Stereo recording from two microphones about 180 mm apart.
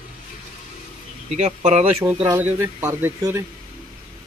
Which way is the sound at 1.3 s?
40° right (ahead or behind).